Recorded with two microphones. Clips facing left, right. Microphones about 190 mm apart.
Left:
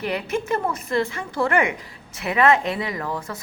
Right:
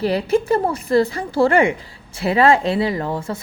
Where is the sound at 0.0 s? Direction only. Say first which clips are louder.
Right 7 dB; 35° right (ahead or behind).